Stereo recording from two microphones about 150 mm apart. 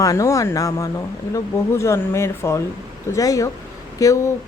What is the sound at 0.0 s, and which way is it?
Speech, 20° left (ahead or behind).